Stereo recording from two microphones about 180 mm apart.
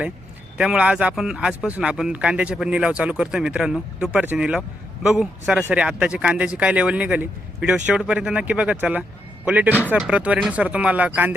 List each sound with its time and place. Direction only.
0.5 s speech: 5° right (ahead or behind)